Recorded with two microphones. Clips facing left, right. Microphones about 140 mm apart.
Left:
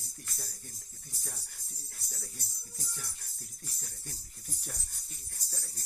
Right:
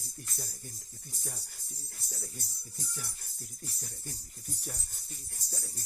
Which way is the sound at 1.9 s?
5° right (ahead or behind).